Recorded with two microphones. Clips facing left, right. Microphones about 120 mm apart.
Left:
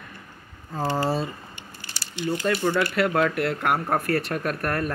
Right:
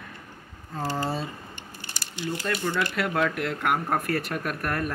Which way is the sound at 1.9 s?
50° right (ahead or behind).